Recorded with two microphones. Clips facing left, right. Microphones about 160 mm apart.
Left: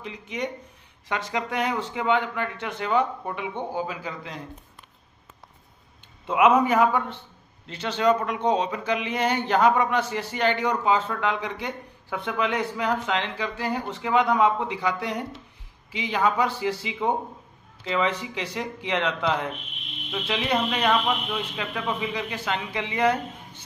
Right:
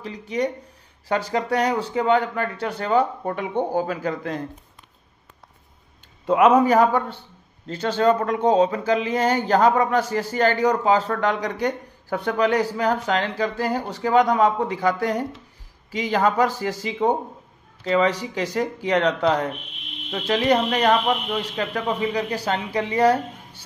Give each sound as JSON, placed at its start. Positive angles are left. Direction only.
{"t": 0.0, "sound": "speech", "side_deg": -35}
{"t": 6.2, "sound": "speech", "side_deg": -40}